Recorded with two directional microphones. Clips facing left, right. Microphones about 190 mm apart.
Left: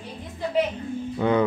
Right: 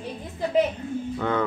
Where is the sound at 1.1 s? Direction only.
15° left (ahead or behind).